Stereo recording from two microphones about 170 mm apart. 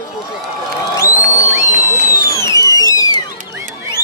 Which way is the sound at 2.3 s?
20° left (ahead or behind).